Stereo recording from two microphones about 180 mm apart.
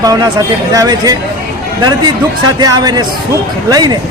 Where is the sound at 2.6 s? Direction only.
20° right (ahead or behind).